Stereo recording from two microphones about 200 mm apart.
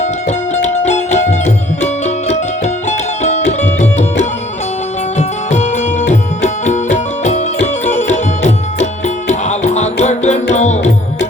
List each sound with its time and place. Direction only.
0.0 s music: 35° left (ahead or behind)